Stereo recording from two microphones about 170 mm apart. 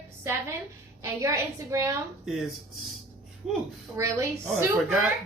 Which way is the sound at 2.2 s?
Centre (ahead or behind).